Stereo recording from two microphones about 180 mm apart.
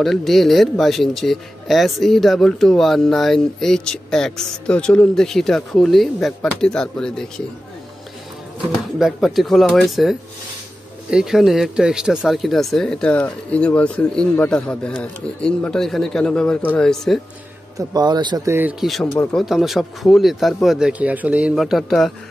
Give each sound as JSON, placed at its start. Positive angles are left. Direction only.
{"t": 0.0, "sound": "speech", "side_deg": 0}
{"t": 8.9, "sound": "speech", "side_deg": 0}
{"t": 17.7, "sound": "speech", "side_deg": -20}